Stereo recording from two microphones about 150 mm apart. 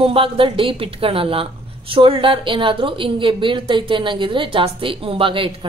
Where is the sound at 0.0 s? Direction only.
35° right (ahead or behind).